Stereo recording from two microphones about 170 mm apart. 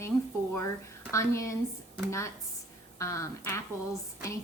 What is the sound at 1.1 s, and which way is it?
A woman's voice, 15° left (ahead or behind).